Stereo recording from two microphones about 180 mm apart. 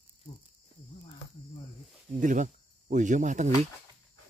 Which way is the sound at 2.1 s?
45° right (ahead or behind).